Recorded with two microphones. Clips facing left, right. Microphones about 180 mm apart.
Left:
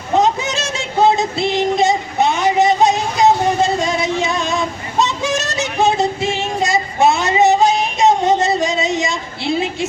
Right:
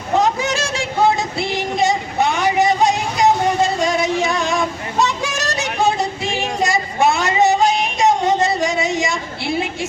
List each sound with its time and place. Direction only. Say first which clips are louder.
0.2 s music: left 2 dB; 20° left (ahead or behind)